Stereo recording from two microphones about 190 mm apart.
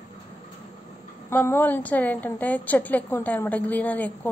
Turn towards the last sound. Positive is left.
turn(degrees=10)  # may be behind; listen again after turning